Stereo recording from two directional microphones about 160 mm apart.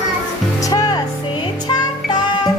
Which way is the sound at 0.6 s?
25° left (ahead or behind).